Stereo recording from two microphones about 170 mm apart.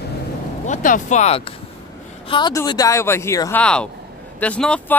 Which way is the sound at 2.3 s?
20° left (ahead or behind).